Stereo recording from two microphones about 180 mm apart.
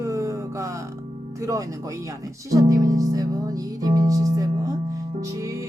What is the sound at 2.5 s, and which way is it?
Music, 20° right (ahead or behind).